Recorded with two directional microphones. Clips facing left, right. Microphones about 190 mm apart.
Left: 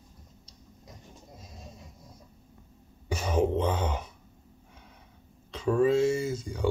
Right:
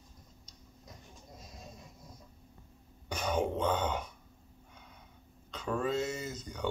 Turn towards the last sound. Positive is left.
turn(degrees=10)  # may be behind; listen again after turning